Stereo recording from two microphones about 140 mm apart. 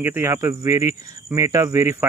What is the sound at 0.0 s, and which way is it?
Speech, 15° right (ahead or behind).